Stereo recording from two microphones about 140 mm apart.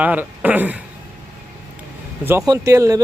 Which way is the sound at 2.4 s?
25° right (ahead or behind).